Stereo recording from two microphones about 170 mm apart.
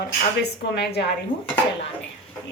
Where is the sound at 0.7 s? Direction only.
75° left (ahead or behind).